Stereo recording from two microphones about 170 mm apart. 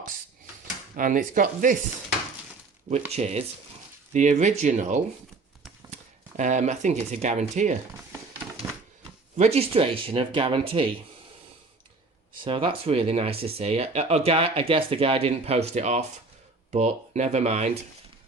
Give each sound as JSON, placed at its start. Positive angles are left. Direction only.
{"t": 0.9, "sound": "speech", "side_deg": -50}
{"t": 3.1, "sound": "speech", "side_deg": -40}
{"t": 9.3, "sound": "speech", "side_deg": -40}
{"t": 12.4, "sound": "speech", "side_deg": -30}